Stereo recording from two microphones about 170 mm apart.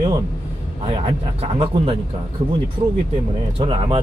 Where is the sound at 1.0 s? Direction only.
35° right (ahead or behind).